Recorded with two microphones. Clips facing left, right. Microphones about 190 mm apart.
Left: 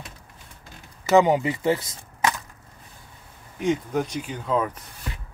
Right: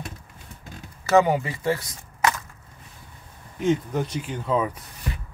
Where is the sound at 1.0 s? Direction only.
20° left (ahead or behind).